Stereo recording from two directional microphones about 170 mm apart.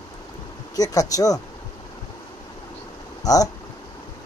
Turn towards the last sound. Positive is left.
turn(degrees=20)  # may be behind; listen again after turning